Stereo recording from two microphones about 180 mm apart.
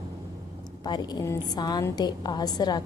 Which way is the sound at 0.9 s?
25° left (ahead or behind).